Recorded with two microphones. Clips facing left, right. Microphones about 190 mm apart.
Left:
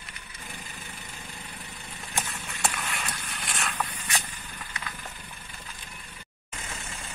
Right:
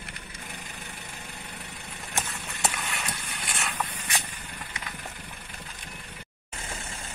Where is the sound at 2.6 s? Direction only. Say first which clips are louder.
Even; centre (ahead or behind).